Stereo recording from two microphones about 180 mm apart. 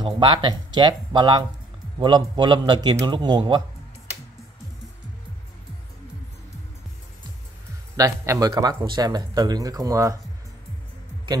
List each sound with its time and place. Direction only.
0.0 s speech: 25° right (ahead or behind)
7.9 s speech: 20° right (ahead or behind)